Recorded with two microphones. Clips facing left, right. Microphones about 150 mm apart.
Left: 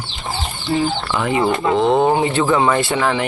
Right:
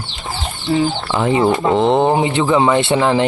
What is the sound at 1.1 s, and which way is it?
Speech, 25° right (ahead or behind).